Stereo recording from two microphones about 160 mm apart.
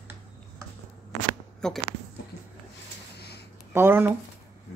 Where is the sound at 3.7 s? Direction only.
15° right (ahead or behind).